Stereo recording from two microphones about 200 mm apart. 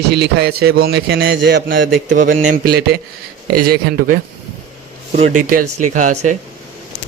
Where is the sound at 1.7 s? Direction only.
40° right (ahead or behind).